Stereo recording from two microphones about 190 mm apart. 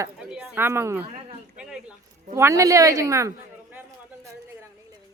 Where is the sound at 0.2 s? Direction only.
5° right (ahead or behind).